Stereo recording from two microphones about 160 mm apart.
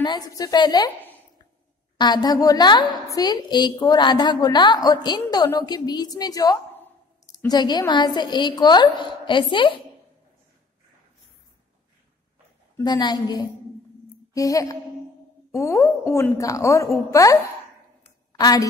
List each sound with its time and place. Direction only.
0.0 s a woman's voice: 25° left (ahead or behind)
2.0 s a woman's voice: 25° left (ahead or behind)
12.7 s a woman's voice: 25° left (ahead or behind)
18.0 s a sound: 20° left (ahead or behind)